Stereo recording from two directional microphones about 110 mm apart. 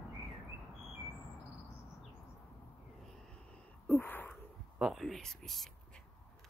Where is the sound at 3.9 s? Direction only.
15° left (ahead or behind).